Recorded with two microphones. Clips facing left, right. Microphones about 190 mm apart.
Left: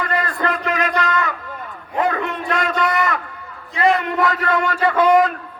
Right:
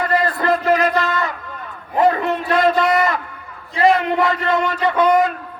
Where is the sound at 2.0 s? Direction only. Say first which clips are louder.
Right 5 dB; 35° right (ahead or behind).